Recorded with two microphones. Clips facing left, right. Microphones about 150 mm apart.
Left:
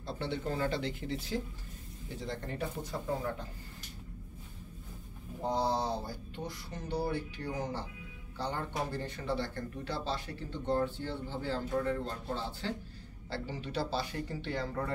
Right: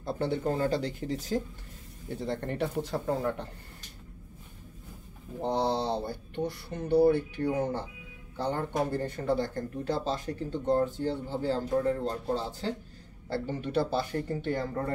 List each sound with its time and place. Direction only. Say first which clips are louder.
0.0 s speech: right 7 dB; 45° right (ahead or behind)
2.0 s speech: right 7 dB; 55° right (ahead or behind)
5.4 s speech: right 3 dB; 70° right (ahead or behind); by 12.7 s 40° right (ahead or behind)
13.3 s speech: right 7 dB; 55° right (ahead or behind)